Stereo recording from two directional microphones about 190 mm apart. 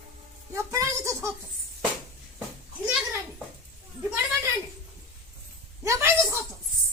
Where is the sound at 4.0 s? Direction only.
10° right (ahead or behind).